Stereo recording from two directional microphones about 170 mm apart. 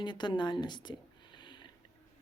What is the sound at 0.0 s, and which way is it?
Speech, 25° left (ahead or behind).